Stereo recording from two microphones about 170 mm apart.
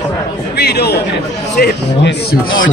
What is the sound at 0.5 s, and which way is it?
Chatter, 70° left (ahead or behind).